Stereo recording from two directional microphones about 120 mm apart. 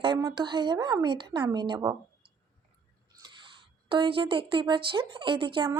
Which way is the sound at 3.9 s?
45° right (ahead or behind).